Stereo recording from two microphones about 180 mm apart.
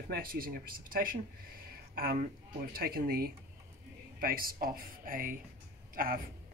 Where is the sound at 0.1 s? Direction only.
55° right (ahead or behind).